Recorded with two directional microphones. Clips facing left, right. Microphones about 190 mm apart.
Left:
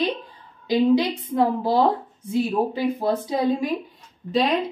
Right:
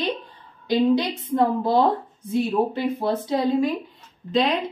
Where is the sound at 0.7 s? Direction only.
10° left (ahead or behind).